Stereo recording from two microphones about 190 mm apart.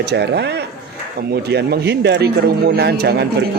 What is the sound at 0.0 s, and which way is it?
A man's voice, 60° right (ahead or behind).